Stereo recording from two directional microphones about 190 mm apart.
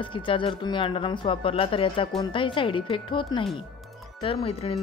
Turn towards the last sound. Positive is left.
turn(degrees=30)  # may be behind; listen again after turning